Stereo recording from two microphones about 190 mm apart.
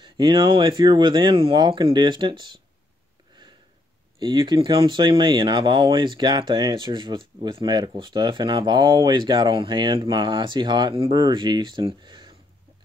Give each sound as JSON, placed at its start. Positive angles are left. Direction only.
{"t": 0.0, "sound": "speech", "side_deg": -25}
{"t": 4.2, "sound": "speech", "side_deg": -25}